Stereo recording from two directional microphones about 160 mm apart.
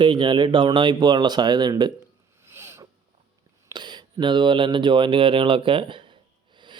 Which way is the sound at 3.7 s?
25° right (ahead or behind).